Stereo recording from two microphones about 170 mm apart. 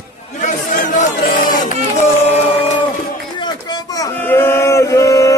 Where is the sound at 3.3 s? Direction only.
25° left (ahead or behind).